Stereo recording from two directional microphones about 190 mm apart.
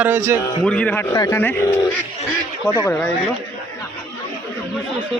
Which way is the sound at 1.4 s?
10° left (ahead or behind).